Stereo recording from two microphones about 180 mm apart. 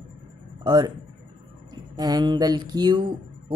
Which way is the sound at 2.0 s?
20° right (ahead or behind).